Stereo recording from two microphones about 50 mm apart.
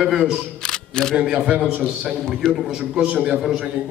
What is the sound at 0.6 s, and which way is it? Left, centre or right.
Single-lens reflex camera, centre.